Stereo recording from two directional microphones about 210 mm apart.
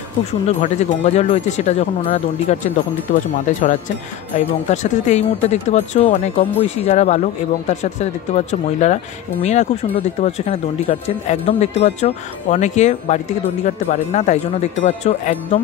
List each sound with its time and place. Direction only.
0.3 s speech: 30° left (ahead or behind)
4.6 s speech: 35° left (ahead or behind)